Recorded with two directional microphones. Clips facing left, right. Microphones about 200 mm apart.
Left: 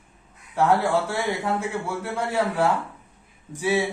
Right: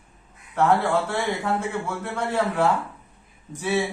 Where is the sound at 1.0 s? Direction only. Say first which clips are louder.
Even; 10° left (ahead or behind).